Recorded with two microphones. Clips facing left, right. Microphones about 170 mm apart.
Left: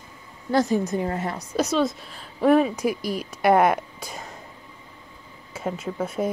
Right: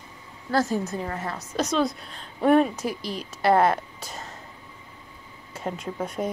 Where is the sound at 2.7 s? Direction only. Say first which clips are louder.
Left 5 dB; 10° left (ahead or behind).